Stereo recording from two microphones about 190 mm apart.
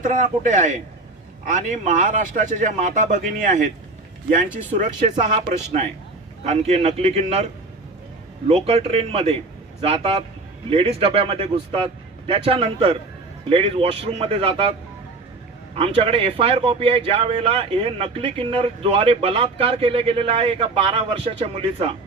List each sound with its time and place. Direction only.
0.0 s a man's voice: 40° right (ahead or behind)
4.7 s a man's voice: 40° right (ahead or behind)
8.5 s a man's voice: 30° right (ahead or behind)